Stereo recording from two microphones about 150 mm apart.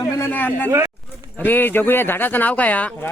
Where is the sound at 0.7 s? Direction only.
20° right (ahead or behind).